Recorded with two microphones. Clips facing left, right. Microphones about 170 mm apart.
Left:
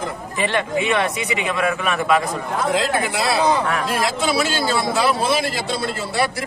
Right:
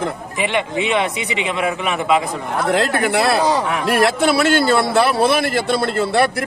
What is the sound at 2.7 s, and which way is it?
A man's voice, 65° right (ahead or behind).